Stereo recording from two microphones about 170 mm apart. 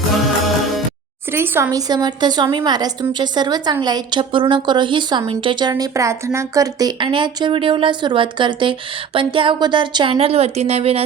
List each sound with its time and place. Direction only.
1.3 s a woman's voice: 15° right (ahead or behind); by 11.0 s 35° right (ahead or behind)